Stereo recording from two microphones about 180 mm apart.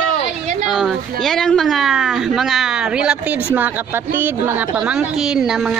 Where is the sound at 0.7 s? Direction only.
Centre (ahead or behind).